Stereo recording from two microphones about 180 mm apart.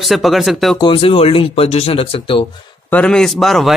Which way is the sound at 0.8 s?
30° left (ahead or behind).